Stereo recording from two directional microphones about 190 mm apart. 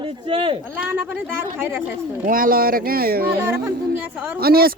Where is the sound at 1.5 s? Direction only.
10° right (ahead or behind).